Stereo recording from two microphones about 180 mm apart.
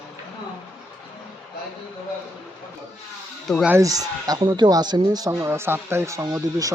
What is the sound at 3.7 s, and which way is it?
Speech, 20° right (ahead or behind).